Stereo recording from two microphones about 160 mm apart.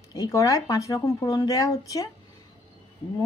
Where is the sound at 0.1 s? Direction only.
20° left (ahead or behind).